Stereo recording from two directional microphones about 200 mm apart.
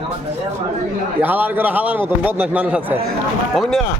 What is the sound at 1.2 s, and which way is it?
A man's voice, 10° right (ahead or behind).